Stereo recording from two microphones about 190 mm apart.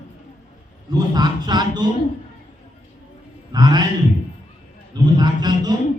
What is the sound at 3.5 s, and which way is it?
Speech, 20° right (ahead or behind).